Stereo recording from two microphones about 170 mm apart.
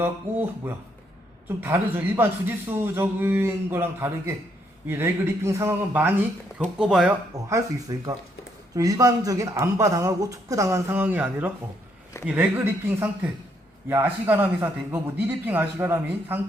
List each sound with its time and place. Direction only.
0.0 s a man's voice: 10° right (ahead or behind)
7.5 s a man's voice: 25° right (ahead or behind)